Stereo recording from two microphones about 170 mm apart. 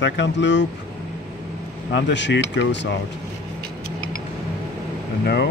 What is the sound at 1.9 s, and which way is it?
Speech, 90° left.